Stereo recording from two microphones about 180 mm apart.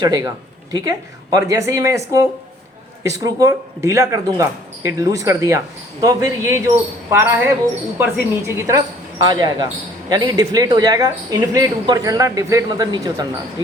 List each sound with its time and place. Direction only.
0.0 s speech: 20° right (ahead or behind)